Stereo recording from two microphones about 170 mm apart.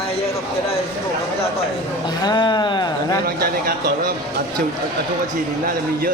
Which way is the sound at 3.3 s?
60° right (ahead or behind).